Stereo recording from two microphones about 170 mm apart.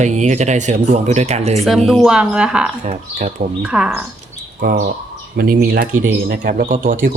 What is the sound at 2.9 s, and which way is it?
Speech, 45° right (ahead or behind).